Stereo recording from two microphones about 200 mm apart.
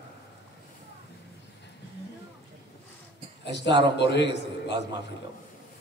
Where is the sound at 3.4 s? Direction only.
60° left (ahead or behind).